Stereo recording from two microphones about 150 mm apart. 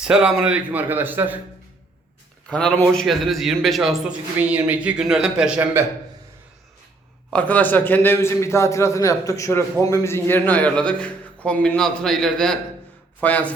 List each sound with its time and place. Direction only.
0.0 s a man's voice: 5° right (ahead or behind)
2.5 s a man's voice: 5° left (ahead or behind)
4.4 s a man's voice: 10° right (ahead or behind)
5.8 s a man's voice: 15° right (ahead or behind)
7.3 s a man's voice: 10° left (ahead or behind)